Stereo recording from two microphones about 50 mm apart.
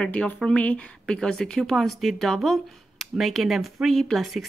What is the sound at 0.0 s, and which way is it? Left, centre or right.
Speech, left.